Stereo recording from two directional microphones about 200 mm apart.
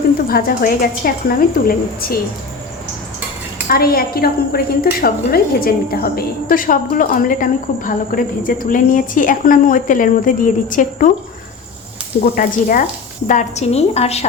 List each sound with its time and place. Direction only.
0.3 s a woman's voice: 45° left (ahead or behind)
3.7 s a woman's voice: 50° left (ahead or behind)
12.2 s a woman's voice: 45° left (ahead or behind)